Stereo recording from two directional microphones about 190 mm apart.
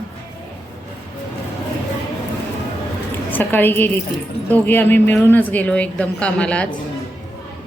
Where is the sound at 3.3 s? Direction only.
10° left (ahead or behind).